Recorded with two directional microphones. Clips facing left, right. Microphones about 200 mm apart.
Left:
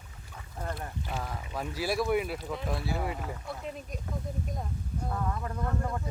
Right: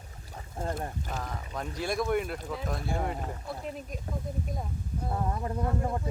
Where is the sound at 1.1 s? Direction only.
5° left (ahead or behind).